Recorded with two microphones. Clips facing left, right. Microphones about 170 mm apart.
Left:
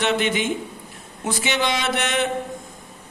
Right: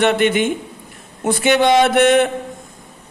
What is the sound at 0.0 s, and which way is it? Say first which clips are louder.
Speech: right 6 dB; 55° right (ahead or behind).